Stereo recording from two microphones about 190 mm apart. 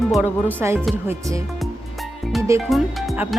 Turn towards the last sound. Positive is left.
turn(degrees=0)  # may be behind; listen again after turning